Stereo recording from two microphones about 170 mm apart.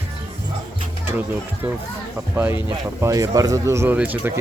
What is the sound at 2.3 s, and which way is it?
Speech, 10° right (ahead or behind).